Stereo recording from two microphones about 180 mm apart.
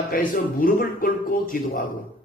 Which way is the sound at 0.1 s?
50° left (ahead or behind).